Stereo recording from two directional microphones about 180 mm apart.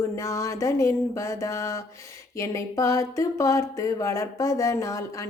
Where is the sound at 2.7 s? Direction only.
15° left (ahead or behind).